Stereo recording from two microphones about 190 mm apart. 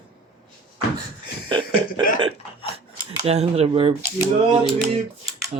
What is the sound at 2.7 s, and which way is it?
Scissors, 30° right (ahead or behind).